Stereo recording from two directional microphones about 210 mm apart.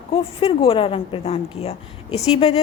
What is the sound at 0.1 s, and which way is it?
A woman's voice, 25° left (ahead or behind).